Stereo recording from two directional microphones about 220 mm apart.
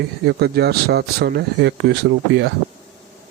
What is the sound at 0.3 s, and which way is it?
Speech, 50° right (ahead or behind).